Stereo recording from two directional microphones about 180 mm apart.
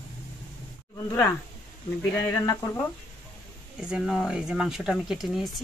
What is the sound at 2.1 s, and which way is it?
Speech, 15° left (ahead or behind).